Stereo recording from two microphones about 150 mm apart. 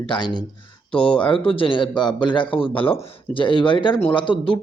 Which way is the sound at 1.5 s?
35° left (ahead or behind).